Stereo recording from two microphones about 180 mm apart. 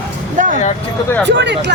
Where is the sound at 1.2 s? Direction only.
75° right (ahead or behind).